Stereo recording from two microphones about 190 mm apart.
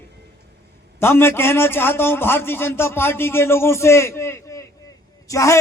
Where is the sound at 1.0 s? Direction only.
10° left (ahead or behind).